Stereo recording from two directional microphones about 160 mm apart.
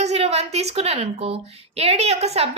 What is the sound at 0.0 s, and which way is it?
A woman's voice, 40° right (ahead or behind).